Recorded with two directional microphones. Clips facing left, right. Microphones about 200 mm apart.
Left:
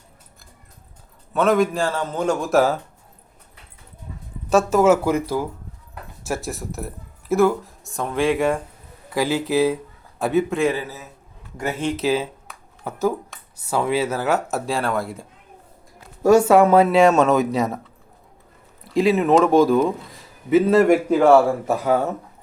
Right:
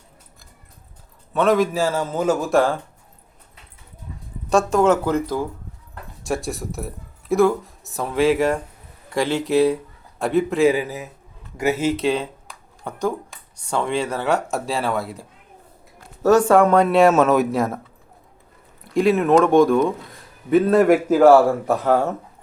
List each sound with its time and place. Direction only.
1.3 s speech: centre (ahead or behind)
4.4 s speech: 5° left (ahead or behind)
16.0 s speech: 10° left (ahead or behind)
18.9 s speech: centre (ahead or behind)